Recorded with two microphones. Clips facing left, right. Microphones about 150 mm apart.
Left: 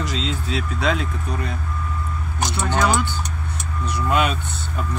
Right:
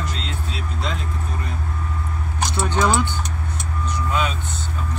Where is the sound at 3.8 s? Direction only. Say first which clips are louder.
Left 3 dB; 65° left (ahead or behind).